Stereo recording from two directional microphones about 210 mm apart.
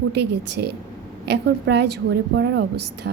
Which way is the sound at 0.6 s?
55° right (ahead or behind).